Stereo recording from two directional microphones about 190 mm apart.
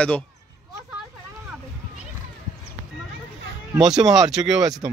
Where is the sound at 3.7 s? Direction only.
5° right (ahead or behind).